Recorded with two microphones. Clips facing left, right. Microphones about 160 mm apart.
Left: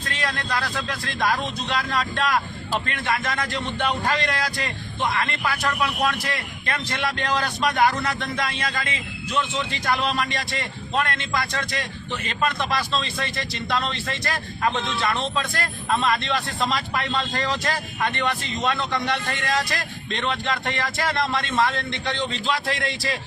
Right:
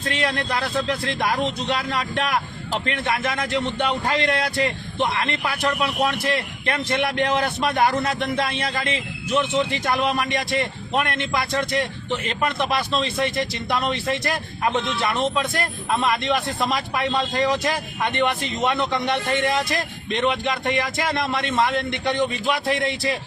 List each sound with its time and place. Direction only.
0.0 s speech: 25° right (ahead or behind)